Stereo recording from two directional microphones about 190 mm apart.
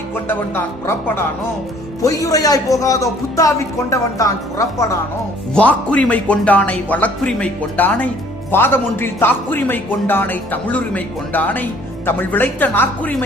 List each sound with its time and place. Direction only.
0.3 s speech: 10° left (ahead or behind)